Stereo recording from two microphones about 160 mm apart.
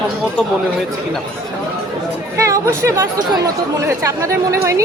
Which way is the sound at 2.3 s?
20° right (ahead or behind).